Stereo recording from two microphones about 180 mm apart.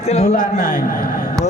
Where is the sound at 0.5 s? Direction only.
55° left (ahead or behind).